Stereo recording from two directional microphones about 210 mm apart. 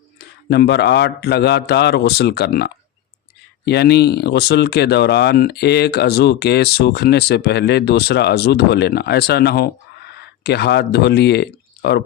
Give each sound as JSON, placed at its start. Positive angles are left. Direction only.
{"t": 0.2, "sound": "speech", "side_deg": 50}